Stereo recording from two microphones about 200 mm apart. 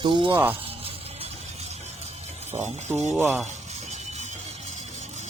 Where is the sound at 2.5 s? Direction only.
35° right (ahead or behind).